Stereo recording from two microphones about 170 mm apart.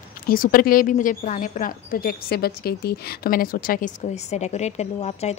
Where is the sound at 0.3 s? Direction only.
55° left (ahead or behind).